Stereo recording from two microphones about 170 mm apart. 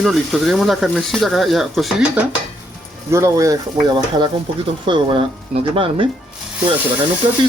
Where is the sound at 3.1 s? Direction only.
15° right (ahead or behind); by 6.0 s 30° right (ahead or behind).